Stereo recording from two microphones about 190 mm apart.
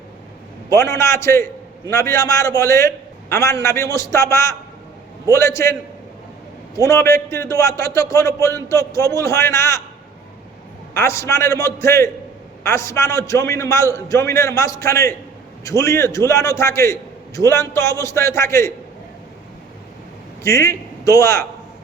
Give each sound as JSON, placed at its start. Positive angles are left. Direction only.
{"t": 0.7, "sound": "a man's voice", "side_deg": 15}
{"t": 6.7, "sound": "a man's voice", "side_deg": 15}
{"t": 10.9, "sound": "a man's voice", "side_deg": 15}
{"t": 20.4, "sound": "a man's voice", "side_deg": 15}